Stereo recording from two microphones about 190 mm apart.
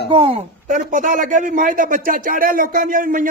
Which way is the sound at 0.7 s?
40° right (ahead or behind).